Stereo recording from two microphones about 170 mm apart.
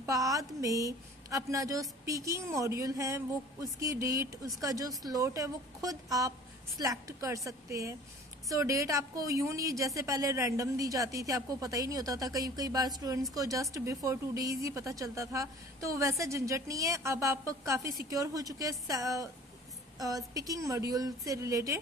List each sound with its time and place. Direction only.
0.0 s a woman's voice: 20° right (ahead or behind)